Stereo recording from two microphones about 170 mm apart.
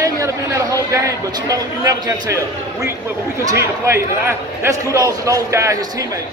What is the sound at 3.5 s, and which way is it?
A man's voice, 15° right (ahead or behind).